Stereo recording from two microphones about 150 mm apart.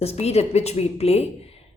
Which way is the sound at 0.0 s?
45° left (ahead or behind).